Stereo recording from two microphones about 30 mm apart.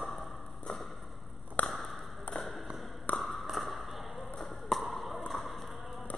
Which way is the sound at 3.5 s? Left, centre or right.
Centre.